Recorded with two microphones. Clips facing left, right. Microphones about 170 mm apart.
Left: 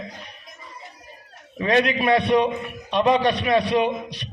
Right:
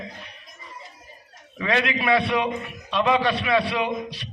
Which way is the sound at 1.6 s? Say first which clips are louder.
Left 4 dB; 20° left (ahead or behind).